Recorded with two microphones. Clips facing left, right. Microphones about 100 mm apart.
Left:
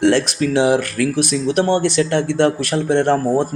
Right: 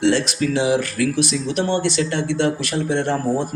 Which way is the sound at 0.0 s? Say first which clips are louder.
Left 3 dB; 55° left (ahead or behind).